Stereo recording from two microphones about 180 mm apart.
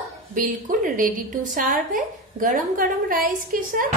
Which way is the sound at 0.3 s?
45° right (ahead or behind).